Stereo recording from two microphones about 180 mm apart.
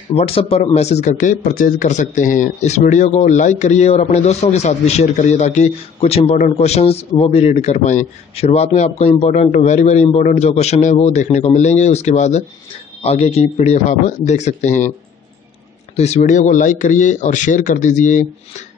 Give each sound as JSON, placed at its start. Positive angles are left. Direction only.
{"t": 0.1, "sound": "a man's voice", "side_deg": 30}
{"t": 16.0, "sound": "a man's voice", "side_deg": 40}